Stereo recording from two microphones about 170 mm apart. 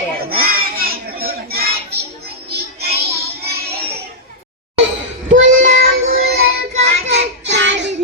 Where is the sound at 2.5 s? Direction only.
70° right (ahead or behind).